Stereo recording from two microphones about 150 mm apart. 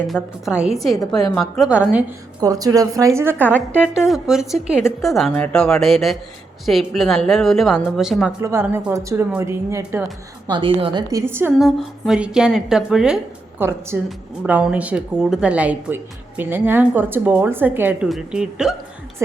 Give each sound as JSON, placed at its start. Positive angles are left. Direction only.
{"t": 0.1, "sound": "a woman's voice", "side_deg": -5}
{"t": 0.9, "sound": "a woman's voice", "side_deg": 25}
{"t": 1.4, "sound": "a woman's voice", "side_deg": 0}
{"t": 2.4, "sound": "a woman's voice", "side_deg": -25}
{"t": 8.4, "sound": "speech", "side_deg": -20}
{"t": 8.6, "sound": "speech", "side_deg": -10}
{"t": 8.9, "sound": "speech", "side_deg": -20}
{"t": 10.6, "sound": "a woman's voice", "side_deg": -40}
{"t": 11.1, "sound": "speech", "side_deg": -15}
{"t": 11.6, "sound": "a woman's voice", "side_deg": 0}
{"t": 13.6, "sound": "a woman's voice", "side_deg": -15}